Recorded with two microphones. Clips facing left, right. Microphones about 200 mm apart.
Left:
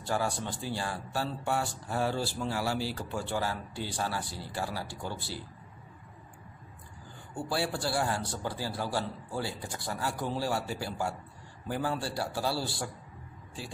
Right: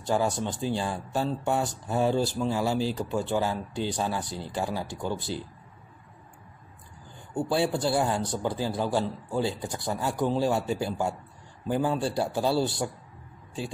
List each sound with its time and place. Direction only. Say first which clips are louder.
0.0 s speech: right 5 dB; 20° right (ahead or behind)
7.3 s speech: right 7 dB; 20° right (ahead or behind)